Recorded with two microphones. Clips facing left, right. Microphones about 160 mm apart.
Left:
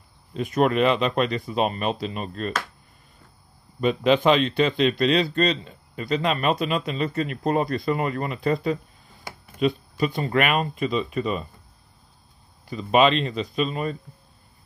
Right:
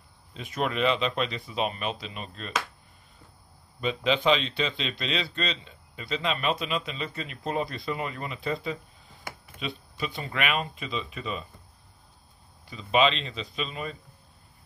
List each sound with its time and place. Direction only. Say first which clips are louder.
0.3 s a man's voice: left 9 dB; 45° left (ahead or behind)
3.8 s a man's voice: left 6 dB; 50° left (ahead or behind)
12.6 s a man's voice: left 5 dB; 45° left (ahead or behind)